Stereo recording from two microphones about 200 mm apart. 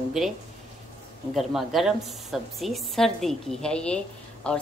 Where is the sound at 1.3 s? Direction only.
Centre (ahead or behind).